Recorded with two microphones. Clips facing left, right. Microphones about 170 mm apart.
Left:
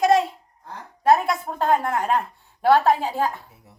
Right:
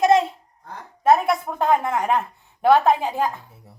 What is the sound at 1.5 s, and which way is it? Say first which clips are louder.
A woman's voice: left 1 dB; 15° right (ahead or behind).